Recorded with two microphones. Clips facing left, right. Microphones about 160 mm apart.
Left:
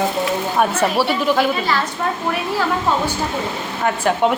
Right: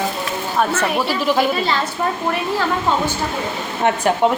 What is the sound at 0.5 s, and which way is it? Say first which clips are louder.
Speech: even; 10° left (ahead or behind).